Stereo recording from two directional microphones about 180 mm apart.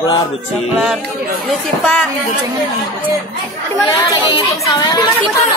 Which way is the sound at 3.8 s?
20° left (ahead or behind).